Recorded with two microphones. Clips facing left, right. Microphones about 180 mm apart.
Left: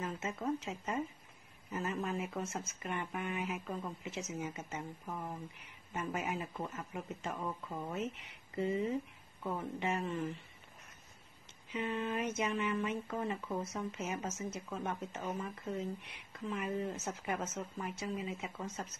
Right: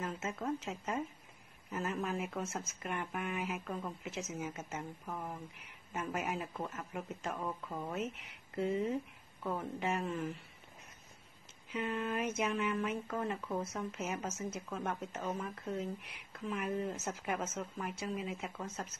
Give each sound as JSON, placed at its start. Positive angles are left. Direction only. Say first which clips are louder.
{"t": 0.0, "sound": "speech", "louder": "even", "side_deg": 0}
{"t": 11.7, "sound": "speech", "louder": "even", "side_deg": 0}